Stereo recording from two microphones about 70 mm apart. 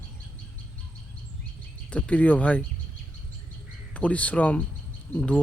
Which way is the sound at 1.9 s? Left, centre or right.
Centre.